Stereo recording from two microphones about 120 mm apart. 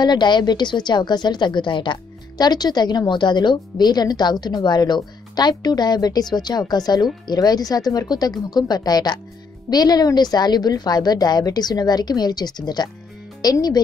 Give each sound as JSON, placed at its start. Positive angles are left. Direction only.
{"t": 0.0, "sound": "a woman's voice", "side_deg": 40}